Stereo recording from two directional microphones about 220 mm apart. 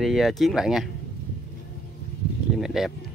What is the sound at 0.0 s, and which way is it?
Speech, centre (ahead or behind).